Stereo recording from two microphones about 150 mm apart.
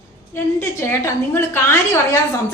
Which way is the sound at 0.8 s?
15° left (ahead or behind).